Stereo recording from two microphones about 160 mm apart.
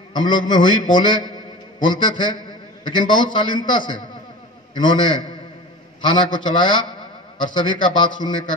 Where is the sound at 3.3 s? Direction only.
30° left (ahead or behind).